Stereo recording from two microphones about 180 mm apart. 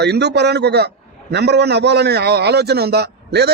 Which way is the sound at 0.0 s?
70° right (ahead or behind).